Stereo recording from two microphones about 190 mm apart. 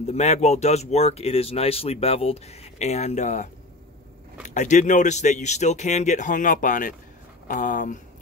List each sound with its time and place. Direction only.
0.0 s speech: 35° left (ahead or behind)
4.6 s speech: 40° left (ahead or behind)